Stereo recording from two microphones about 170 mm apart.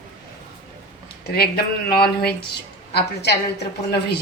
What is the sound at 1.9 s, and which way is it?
A woman's voice, 65° left (ahead or behind).